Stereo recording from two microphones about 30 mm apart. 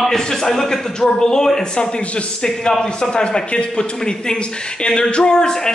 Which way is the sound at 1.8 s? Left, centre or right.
Left.